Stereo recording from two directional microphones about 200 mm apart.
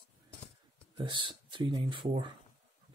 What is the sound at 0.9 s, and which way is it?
Speech, 25° right (ahead or behind).